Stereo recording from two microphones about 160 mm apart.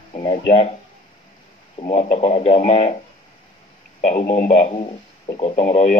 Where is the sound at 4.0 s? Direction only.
45° left (ahead or behind).